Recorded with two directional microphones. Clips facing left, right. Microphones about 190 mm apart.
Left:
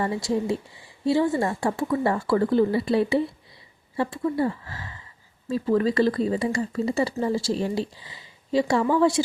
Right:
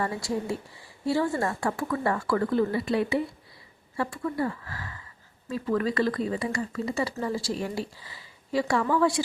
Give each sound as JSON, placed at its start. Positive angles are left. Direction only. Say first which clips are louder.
{"t": 0.0, "sound": "speech", "louder": "left 4 dB", "side_deg": 20}